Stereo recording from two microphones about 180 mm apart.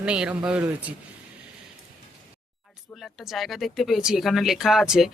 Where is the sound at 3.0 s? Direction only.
Centre (ahead or behind).